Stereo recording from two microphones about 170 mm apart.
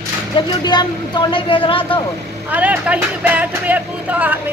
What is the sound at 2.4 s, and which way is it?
Speech, 10° right (ahead or behind).